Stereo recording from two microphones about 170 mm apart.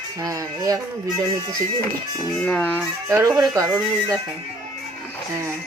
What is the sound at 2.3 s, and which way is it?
Speech, 5° left (ahead or behind).